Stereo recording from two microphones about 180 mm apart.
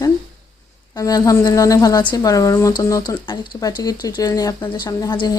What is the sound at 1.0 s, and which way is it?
Speech, 20° left (ahead or behind).